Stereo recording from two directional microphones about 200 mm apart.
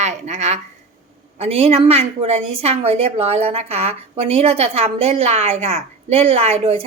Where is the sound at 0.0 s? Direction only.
35° right (ahead or behind).